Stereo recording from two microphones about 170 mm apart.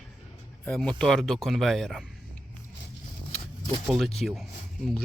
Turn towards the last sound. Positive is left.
turn(degrees=5)  # may be behind; listen again after turning